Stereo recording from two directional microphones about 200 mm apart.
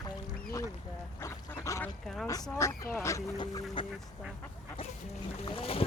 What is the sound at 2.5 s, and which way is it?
Speech, 15° left (ahead or behind).